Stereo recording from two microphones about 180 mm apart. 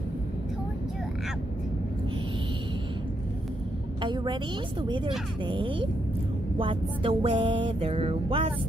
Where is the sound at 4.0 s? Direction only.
25° right (ahead or behind).